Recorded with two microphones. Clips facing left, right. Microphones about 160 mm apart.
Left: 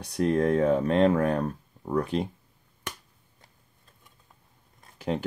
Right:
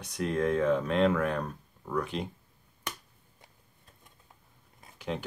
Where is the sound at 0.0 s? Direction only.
40° left (ahead or behind).